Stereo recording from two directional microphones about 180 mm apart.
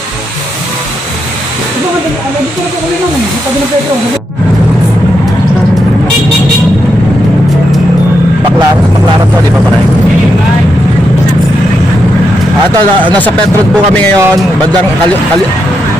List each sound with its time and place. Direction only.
14.1 s speech: 20° right (ahead or behind)